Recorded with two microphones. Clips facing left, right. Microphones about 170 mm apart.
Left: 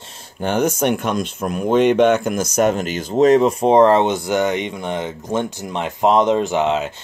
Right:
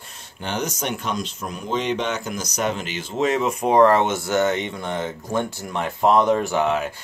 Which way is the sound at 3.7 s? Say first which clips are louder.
Left 2 dB; 20° left (ahead or behind).